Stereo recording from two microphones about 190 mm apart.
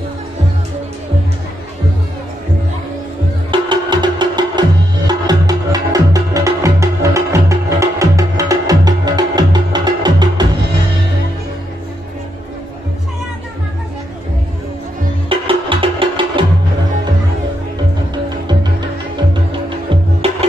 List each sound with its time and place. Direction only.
3.5 s music: 25° right (ahead or behind)
15.2 s music: 30° right (ahead or behind)
18.1 s music: 20° right (ahead or behind)
19.9 s music: 30° right (ahead or behind)